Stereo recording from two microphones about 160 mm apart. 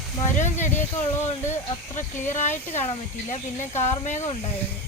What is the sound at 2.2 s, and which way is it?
Speech, 50° left (ahead or behind).